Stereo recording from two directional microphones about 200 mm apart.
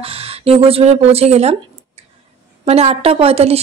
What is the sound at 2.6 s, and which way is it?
Speech, 30° right (ahead or behind).